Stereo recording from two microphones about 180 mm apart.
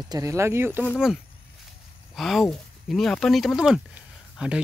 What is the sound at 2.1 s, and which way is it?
Speech, centre (ahead or behind).